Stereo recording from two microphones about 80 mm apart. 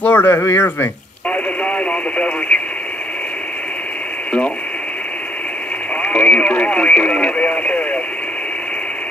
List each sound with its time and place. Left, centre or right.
0.0 s speech: centre
1.3 s radio: centre
6.0 s speech: centre